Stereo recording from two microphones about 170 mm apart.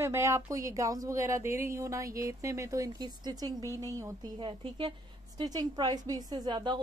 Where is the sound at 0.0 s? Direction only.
15° right (ahead or behind).